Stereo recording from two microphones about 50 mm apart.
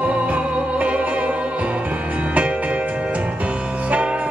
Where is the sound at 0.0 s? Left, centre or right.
Right.